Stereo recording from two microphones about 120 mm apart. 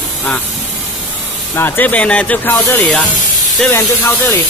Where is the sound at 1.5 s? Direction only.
15° left (ahead or behind).